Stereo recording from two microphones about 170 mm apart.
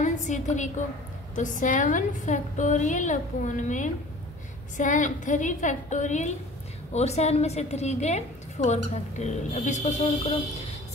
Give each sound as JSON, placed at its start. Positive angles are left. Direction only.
{"t": 0.0, "sound": "a woman's voice", "side_deg": 45}